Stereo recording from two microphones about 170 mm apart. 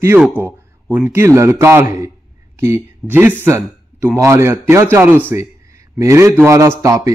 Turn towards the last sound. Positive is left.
turn(degrees=-20)  # may be behind; listen again after turning